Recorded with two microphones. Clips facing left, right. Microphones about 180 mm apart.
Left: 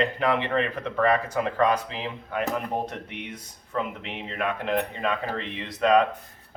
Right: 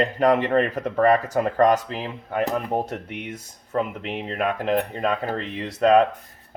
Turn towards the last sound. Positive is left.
turn(degrees=-40)  # may be behind; listen again after turning